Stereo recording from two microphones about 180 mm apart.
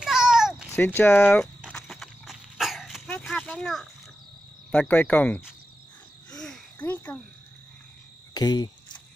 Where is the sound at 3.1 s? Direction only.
5° left (ahead or behind).